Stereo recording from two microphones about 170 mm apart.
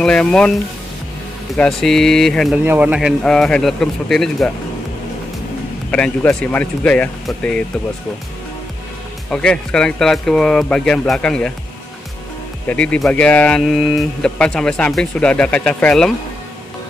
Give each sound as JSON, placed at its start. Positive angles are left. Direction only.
{"t": 0.0, "sound": "speech", "side_deg": 5}
{"t": 1.6, "sound": "speech", "side_deg": 5}
{"t": 2.6, "sound": "speech", "side_deg": -10}
{"t": 5.9, "sound": "speech", "side_deg": 5}
{"t": 9.3, "sound": "speech", "side_deg": 5}
{"t": 12.6, "sound": "speech", "side_deg": 5}